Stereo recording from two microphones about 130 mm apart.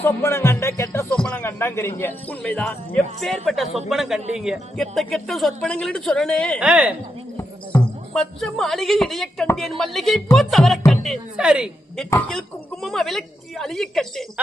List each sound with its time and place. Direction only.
0.0 s music: 20° left (ahead or behind)
1.1 s speech: 10° left (ahead or behind)
1.5 s a man's voice: 20° left (ahead or behind)
6.6 s speech: 10° right (ahead or behind)
7.3 s a man's voice: 10° left (ahead or behind)